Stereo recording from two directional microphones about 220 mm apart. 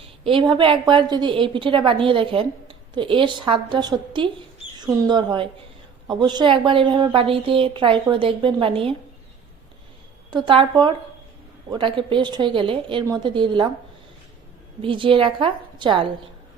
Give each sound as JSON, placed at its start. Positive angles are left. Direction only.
{"t": 0.3, "sound": "a woman's voice", "side_deg": -20}
{"t": 10.3, "sound": "a woman's voice", "side_deg": -20}
{"t": 14.8, "sound": "a woman's voice", "side_deg": -25}